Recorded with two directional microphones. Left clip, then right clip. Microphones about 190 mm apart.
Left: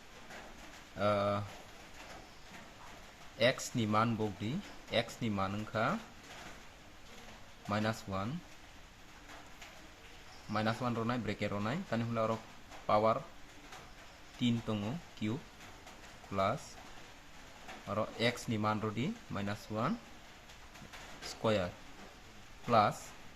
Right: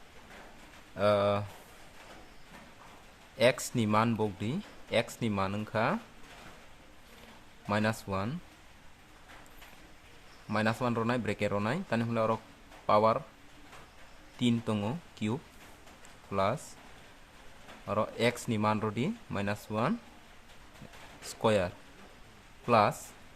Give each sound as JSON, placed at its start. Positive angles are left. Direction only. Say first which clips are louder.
{"t": 0.9, "sound": "speech", "louder": "right 5 dB", "side_deg": -40}
{"t": 3.3, "sound": "speech", "louder": "right 5 dB", "side_deg": -40}
{"t": 7.7, "sound": "speech", "louder": "right 5 dB", "side_deg": -40}
{"t": 10.5, "sound": "speech", "louder": "right 5 dB", "side_deg": -40}
{"t": 14.3, "sound": "speech", "louder": "right 5 dB", "side_deg": -40}
{"t": 16.3, "sound": "speech", "louder": "right 3 dB", "side_deg": -40}
{"t": 17.8, "sound": "speech", "louder": "right 5 dB", "side_deg": -40}
{"t": 21.4, "sound": "speech", "louder": "right 5 dB", "side_deg": -40}